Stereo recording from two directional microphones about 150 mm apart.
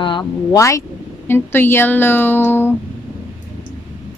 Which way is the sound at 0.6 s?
20° left (ahead or behind).